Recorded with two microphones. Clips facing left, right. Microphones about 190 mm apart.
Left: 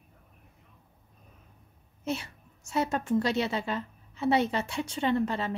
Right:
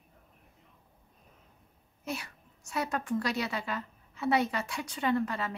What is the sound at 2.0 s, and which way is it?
A woman's voice, 25° left (ahead or behind).